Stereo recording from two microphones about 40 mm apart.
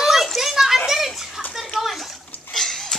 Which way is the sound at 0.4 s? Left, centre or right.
Centre.